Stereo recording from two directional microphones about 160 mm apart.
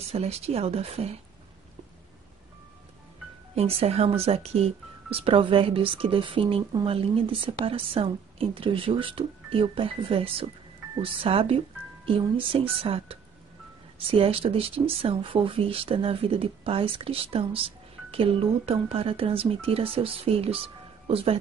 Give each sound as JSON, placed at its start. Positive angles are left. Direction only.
{"t": 0.0, "sound": "speech", "side_deg": -40}
{"t": 3.5, "sound": "speech", "side_deg": -40}